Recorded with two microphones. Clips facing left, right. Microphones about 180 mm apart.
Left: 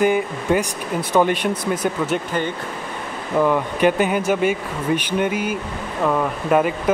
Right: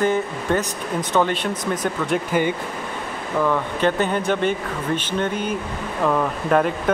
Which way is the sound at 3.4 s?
15° left (ahead or behind).